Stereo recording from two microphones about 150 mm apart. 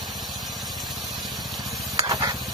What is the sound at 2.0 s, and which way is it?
Vehicle, 25° right (ahead or behind).